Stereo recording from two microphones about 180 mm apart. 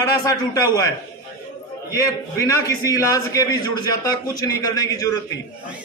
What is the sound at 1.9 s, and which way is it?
A man's voice, 20° left (ahead or behind).